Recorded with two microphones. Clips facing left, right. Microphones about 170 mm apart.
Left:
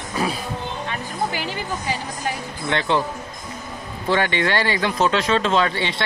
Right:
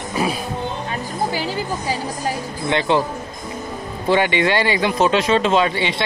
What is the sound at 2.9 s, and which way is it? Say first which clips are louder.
Speech: right 3 dB; 15° right (ahead or behind).